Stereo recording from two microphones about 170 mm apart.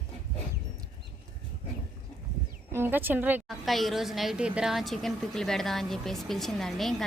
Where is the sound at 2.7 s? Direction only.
10° right (ahead or behind).